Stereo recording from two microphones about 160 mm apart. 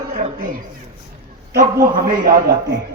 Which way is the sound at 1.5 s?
60° right (ahead or behind).